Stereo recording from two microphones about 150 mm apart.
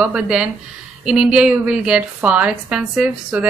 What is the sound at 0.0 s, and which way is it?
A woman's voice, 5° right (ahead or behind).